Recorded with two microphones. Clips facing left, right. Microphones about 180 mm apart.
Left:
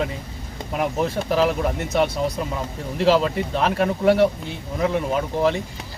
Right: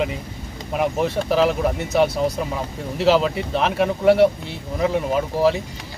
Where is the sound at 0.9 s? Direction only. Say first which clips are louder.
Right 1 dB; centre (ahead or behind).